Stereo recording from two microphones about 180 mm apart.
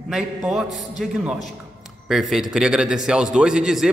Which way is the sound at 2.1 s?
Centre (ahead or behind).